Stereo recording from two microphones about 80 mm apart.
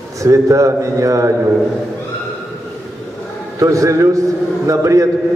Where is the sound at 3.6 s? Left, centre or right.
Right.